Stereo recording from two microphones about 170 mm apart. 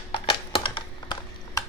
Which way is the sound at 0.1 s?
30° left (ahead or behind).